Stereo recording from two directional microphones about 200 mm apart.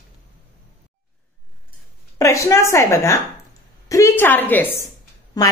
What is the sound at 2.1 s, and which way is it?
A woman's voice, 15° left (ahead or behind).